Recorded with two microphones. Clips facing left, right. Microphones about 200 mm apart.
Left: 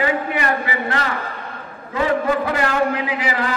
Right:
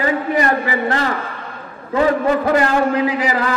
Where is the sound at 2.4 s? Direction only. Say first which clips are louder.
Right 4 dB; 40° right (ahead or behind).